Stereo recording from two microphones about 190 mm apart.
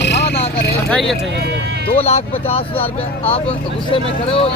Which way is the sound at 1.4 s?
60° right (ahead or behind).